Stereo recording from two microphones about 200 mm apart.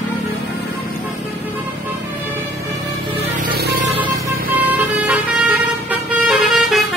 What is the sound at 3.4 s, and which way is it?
Music, 50° right (ahead or behind).